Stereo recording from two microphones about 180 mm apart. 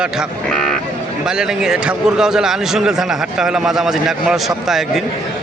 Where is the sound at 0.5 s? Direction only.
5° left (ahead or behind).